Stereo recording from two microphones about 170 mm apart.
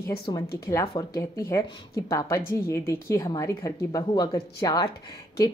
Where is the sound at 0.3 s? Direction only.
25° left (ahead or behind).